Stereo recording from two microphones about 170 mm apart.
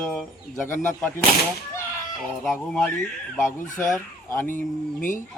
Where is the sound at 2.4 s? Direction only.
Centre (ahead or behind).